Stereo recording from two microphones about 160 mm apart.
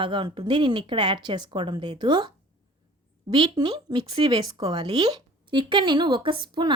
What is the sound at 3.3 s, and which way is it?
Speech, 30° right (ahead or behind).